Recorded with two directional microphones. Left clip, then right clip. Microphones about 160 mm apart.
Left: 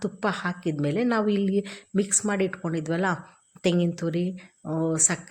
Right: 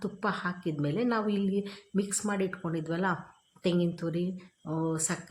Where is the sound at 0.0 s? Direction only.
25° left (ahead or behind).